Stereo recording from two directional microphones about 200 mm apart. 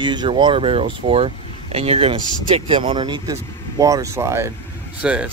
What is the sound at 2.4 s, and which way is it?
Speech, 25° right (ahead or behind).